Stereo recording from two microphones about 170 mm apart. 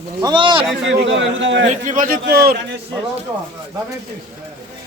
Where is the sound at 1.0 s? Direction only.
90° right.